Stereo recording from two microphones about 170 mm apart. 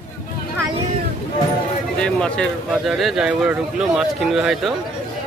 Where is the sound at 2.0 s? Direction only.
5° left (ahead or behind).